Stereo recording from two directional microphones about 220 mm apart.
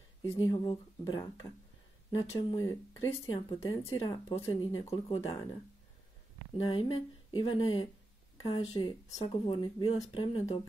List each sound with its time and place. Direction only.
0.3 s speech: 20° left (ahead or behind)
6.6 s speech: 25° left (ahead or behind)